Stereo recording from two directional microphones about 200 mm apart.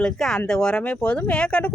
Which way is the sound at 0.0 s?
Centre (ahead or behind).